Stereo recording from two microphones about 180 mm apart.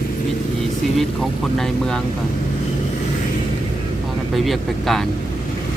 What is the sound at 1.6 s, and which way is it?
Speech, 5° left (ahead or behind).